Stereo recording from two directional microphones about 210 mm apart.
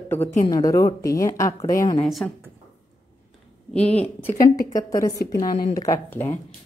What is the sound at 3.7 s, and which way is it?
A woman's voice, 5° left (ahead or behind).